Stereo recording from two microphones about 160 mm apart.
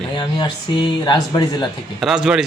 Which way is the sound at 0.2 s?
30° left (ahead or behind).